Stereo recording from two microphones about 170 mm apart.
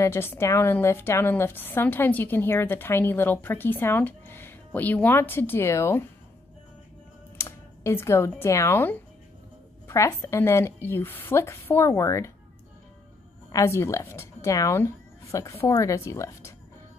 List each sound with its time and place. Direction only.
0.0 s a woman's voice: 15° left (ahead or behind)
7.3 s a woman's voice: 15° left (ahead or behind)
13.5 s a woman's voice: 15° left (ahead or behind)